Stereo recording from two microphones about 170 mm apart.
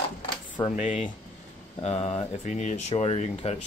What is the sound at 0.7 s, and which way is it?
Speech, 50° left (ahead or behind).